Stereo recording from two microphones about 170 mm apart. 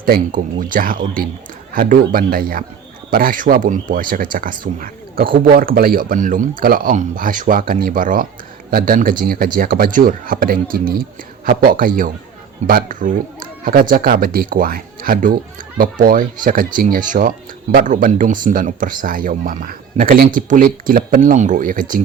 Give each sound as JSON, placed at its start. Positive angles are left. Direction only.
{"t": 0.0, "sound": "speech", "side_deg": -55}